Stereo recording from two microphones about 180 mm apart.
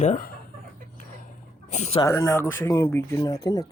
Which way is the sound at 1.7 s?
40° left (ahead or behind).